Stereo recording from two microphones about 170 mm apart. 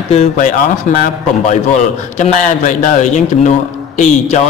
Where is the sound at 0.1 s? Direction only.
45° left (ahead or behind).